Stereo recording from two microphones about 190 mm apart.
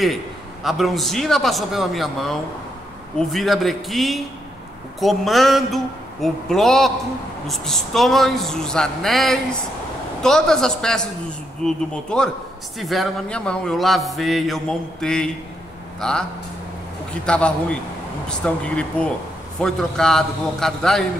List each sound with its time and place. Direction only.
0.7 s speech: centre (ahead or behind)